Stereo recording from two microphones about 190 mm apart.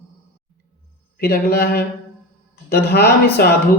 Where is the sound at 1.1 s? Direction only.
55° left (ahead or behind).